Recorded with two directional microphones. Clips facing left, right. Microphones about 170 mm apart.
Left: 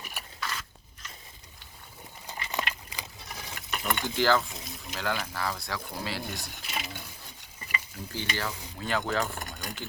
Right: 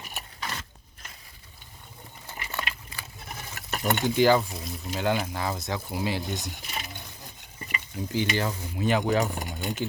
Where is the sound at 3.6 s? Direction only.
45° right (ahead or behind).